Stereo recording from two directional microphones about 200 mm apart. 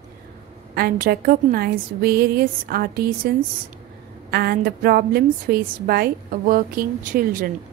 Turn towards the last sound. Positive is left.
turn(degrees=-45)  # may be behind; listen again after turning